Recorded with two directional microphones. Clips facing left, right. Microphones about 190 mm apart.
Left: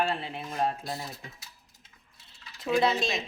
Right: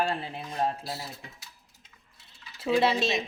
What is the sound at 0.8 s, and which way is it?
Speech, 5° right (ahead or behind).